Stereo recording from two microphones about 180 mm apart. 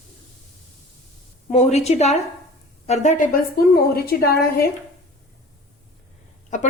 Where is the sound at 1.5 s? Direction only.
35° left (ahead or behind).